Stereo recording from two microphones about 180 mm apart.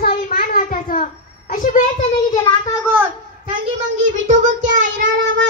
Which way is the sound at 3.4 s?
40° right (ahead or behind).